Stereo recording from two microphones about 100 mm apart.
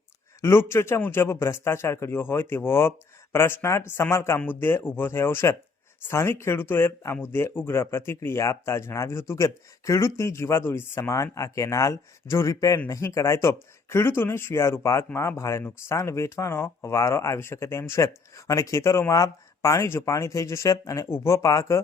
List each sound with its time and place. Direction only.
0.7 s speech: 25° left (ahead or behind)